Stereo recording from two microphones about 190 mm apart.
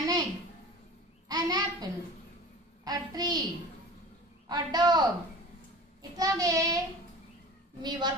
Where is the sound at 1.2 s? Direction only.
20° right (ahead or behind).